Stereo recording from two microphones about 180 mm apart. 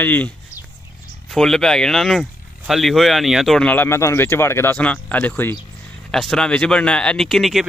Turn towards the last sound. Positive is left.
turn(degrees=0)  # may be behind; listen again after turning